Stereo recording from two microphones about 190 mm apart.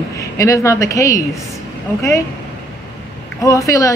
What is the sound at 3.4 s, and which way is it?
Speech, 15° left (ahead or behind).